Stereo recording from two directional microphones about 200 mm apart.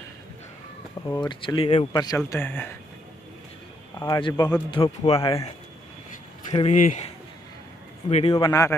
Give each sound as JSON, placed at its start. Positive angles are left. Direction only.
{"t": 1.0, "sound": "speech", "side_deg": 20}
{"t": 4.0, "sound": "speech", "side_deg": 20}
{"t": 6.5, "sound": "speech", "side_deg": 35}
{"t": 8.1, "sound": "speech", "side_deg": 30}